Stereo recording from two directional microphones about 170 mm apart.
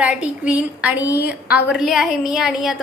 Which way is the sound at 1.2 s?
65° left (ahead or behind).